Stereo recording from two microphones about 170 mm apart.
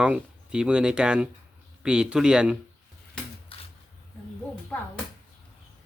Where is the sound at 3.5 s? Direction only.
30° left (ahead or behind).